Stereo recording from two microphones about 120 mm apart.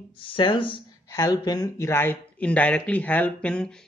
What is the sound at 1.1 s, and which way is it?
Speech, 30° left (ahead or behind).